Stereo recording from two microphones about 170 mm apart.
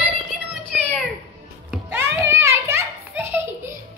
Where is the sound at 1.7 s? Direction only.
10° right (ahead or behind).